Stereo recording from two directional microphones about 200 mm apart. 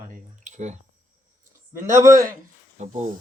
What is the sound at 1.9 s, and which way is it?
Speech, 15° right (ahead or behind).